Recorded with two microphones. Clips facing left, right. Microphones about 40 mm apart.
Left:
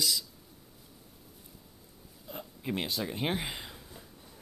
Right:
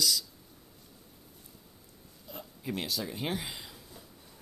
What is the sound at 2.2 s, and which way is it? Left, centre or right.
Speech, left.